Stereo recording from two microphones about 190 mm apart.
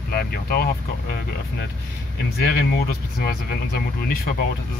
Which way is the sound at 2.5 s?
55° left (ahead or behind).